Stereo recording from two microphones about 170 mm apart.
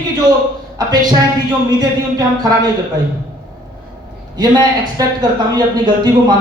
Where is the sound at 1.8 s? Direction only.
20° right (ahead or behind).